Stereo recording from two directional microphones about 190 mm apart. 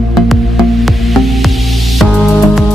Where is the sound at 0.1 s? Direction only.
Centre (ahead or behind).